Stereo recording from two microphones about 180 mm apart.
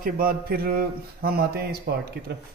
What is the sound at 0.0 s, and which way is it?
A man's voice, 55° right (ahead or behind).